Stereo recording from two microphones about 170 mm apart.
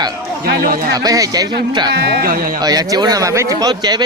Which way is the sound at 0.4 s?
60° right (ahead or behind).